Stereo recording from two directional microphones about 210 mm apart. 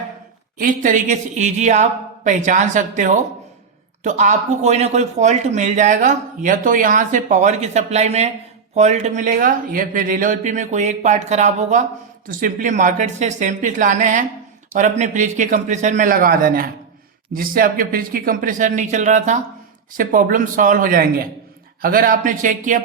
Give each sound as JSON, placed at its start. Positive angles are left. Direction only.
{"t": 0.6, "sound": "speech", "side_deg": -40}